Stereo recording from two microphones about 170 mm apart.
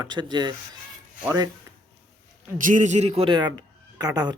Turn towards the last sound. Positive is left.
turn(degrees=-25)  # may be behind; listen again after turning